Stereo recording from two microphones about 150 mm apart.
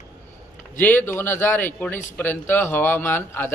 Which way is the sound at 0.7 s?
15° left (ahead or behind).